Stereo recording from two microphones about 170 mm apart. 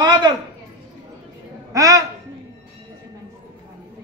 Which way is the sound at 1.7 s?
20° right (ahead or behind).